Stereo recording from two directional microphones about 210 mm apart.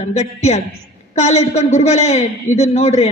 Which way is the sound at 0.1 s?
30° left (ahead or behind).